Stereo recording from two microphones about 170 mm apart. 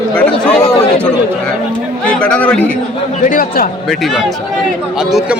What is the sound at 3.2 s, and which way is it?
Speech, 55° left (ahead or behind).